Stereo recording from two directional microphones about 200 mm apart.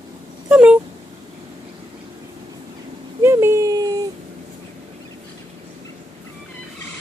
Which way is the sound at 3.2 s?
15° right (ahead or behind).